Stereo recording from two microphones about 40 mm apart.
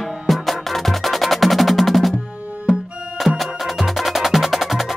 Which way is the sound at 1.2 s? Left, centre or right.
Centre.